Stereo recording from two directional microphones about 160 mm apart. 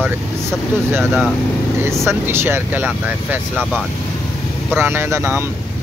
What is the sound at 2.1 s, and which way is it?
Speech, 15° right (ahead or behind).